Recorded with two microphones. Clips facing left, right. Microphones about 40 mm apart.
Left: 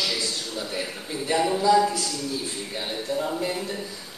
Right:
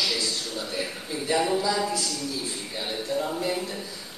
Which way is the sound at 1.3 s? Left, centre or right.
Centre.